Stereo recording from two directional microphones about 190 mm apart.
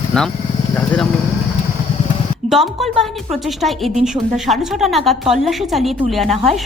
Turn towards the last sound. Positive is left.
turn(degrees=0)  # may be behind; listen again after turning